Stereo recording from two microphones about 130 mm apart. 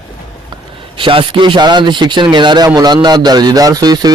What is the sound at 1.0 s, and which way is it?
A man's voice, 40° right (ahead or behind).